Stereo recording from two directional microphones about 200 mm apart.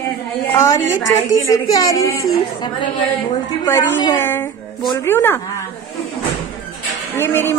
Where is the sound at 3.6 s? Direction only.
15° left (ahead or behind).